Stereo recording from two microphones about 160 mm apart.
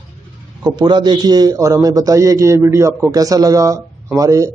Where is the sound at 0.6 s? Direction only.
25° right (ahead or behind).